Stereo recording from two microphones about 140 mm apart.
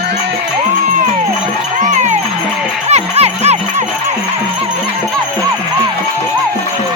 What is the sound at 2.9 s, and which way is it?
Music, 50° right (ahead or behind).